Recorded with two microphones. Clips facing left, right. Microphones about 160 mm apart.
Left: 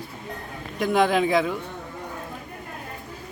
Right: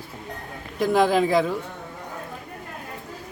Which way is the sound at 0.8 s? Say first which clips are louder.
Right 1 dB; centre (ahead or behind).